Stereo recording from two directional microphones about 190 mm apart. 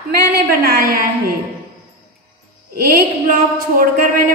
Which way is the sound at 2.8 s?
50° right (ahead or behind).